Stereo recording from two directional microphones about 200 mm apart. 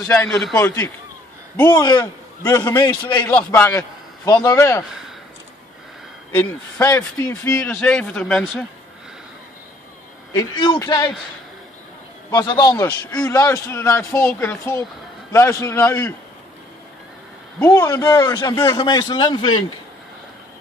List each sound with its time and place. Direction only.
0.1 s a man's voice: 5° left (ahead or behind)
6.3 s speech: 10° left (ahead or behind)
10.3 s a man's voice: 20° left (ahead or behind)
12.3 s a man's voice: 20° left (ahead or behind)
17.6 s a man's voice: 20° left (ahead or behind)